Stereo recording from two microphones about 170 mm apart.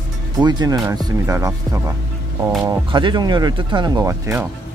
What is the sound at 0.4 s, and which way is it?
Speech, 25° right (ahead or behind).